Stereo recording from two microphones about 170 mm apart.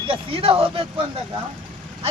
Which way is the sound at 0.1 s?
35° right (ahead or behind).